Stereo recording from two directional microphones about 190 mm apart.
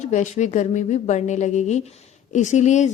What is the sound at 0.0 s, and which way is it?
A woman's voice, 40° left (ahead or behind).